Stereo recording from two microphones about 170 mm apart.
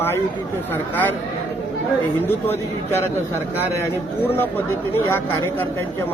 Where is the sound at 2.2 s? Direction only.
15° left (ahead or behind).